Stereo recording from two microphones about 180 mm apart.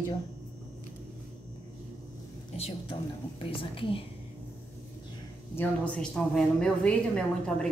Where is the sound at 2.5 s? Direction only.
35° left (ahead or behind).